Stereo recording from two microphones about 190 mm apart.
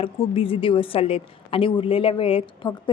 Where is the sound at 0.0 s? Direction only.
30° left (ahead or behind).